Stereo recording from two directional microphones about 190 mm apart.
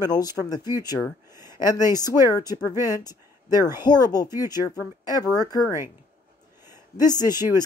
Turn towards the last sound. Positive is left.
turn(degrees=20)  # may be behind; listen again after turning